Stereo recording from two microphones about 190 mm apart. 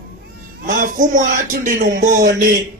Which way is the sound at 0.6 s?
45° right (ahead or behind).